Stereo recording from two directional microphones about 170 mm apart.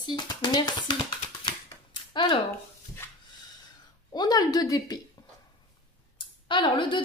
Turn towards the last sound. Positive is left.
turn(degrees=30)  # may be behind; listen again after turning